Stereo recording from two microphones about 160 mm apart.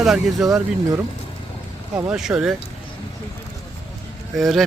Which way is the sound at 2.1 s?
5° right (ahead or behind).